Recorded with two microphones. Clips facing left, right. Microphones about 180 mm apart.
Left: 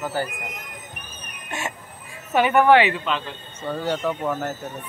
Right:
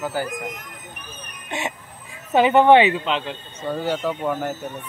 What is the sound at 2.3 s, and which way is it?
Speech, 25° right (ahead or behind).